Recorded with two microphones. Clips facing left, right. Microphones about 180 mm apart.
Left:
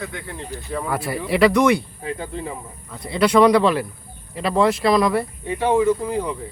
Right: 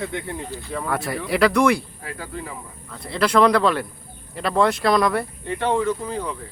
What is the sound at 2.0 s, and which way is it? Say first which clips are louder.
Speech: left 5 dB; 25° left (ahead or behind).